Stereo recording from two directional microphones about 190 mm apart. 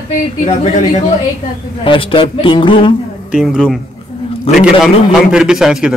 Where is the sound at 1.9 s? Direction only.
25° left (ahead or behind).